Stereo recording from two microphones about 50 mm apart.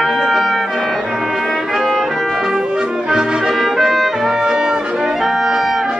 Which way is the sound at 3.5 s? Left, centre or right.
Centre.